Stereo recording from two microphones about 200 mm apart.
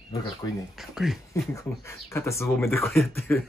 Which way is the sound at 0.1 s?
20° left (ahead or behind).